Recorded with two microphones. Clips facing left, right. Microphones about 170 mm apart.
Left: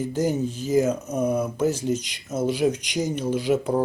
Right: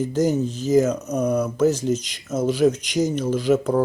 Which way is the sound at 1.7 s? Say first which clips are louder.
Right 3 dB; 40° right (ahead or behind).